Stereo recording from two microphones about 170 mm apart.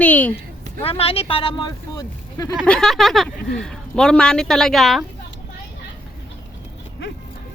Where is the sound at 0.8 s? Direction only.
35° left (ahead or behind).